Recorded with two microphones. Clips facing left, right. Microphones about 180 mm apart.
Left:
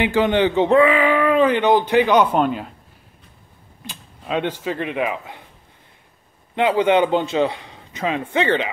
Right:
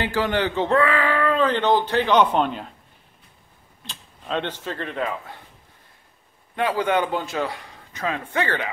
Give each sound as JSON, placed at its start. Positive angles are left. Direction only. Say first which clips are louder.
{"t": 0.0, "sound": "speech", "louder": "left 6 dB", "side_deg": 20}
{"t": 3.8, "sound": "speech", "louder": "left 4 dB", "side_deg": 10}
{"t": 6.5, "sound": "a man's voice", "louder": "left 5 dB", "side_deg": 20}